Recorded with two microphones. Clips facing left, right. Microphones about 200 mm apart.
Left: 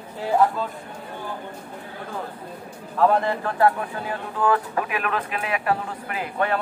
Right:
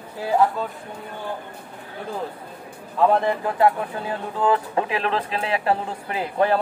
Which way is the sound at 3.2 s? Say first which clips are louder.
Right 1 dB; 15° right (ahead or behind).